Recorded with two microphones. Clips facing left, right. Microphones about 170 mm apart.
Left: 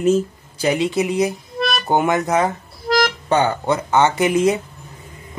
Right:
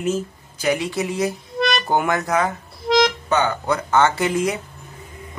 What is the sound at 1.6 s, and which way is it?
Music, centre (ahead or behind).